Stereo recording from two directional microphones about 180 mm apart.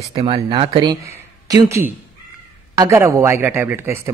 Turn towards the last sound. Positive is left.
turn(degrees=-10)  # may be behind; listen again after turning